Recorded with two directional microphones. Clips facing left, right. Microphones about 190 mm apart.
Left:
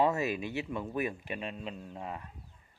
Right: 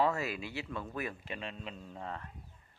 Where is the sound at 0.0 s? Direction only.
20° left (ahead or behind).